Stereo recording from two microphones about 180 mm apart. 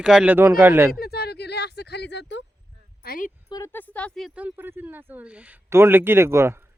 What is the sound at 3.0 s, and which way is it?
Speech, 50° left (ahead or behind).